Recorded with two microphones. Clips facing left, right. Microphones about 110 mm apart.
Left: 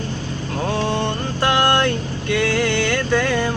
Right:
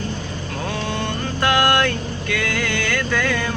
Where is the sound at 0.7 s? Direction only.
30° left (ahead or behind).